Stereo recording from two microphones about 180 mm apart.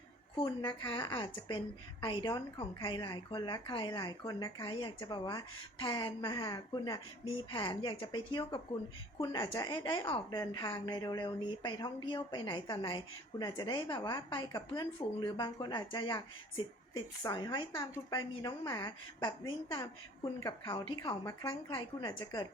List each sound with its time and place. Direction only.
0.3 s a woman's voice: 25° left (ahead or behind)